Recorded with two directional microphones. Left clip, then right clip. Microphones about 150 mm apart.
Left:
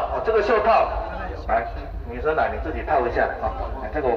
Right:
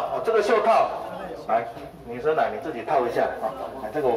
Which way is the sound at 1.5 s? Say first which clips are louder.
Left 1 dB; 30° right (ahead or behind).